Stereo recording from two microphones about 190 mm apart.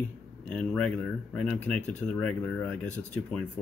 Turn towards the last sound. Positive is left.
turn(degrees=5)  # may be behind; listen again after turning